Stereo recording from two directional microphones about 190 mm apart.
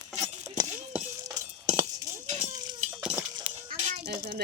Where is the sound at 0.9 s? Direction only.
5° right (ahead or behind).